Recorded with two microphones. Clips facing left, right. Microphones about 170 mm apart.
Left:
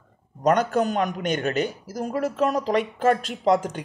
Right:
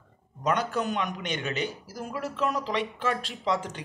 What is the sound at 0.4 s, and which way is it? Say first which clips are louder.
A man's voice: left 7 dB; 45° left (ahead or behind).